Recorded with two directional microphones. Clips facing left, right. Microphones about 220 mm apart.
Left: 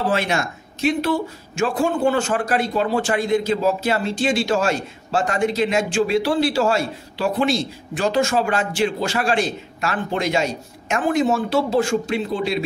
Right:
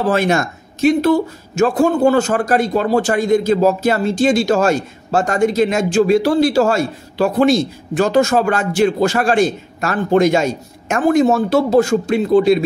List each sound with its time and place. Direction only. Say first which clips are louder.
0.1 s a man's voice: right 6 dB; 45° right (ahead or behind)